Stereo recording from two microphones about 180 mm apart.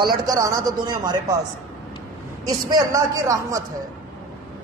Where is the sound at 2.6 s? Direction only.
20° right (ahead or behind).